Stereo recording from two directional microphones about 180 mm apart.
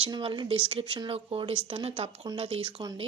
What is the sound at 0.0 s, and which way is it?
Speech, 30° right (ahead or behind).